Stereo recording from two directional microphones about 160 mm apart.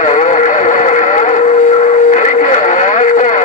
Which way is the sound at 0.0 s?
50° left (ahead or behind).